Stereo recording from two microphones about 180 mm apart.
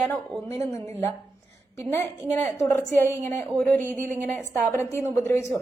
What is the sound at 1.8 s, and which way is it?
A woman's voice, 15° left (ahead or behind).